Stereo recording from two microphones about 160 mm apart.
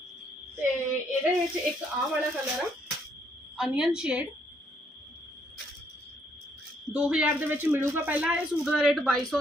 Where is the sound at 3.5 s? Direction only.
5° right (ahead or behind).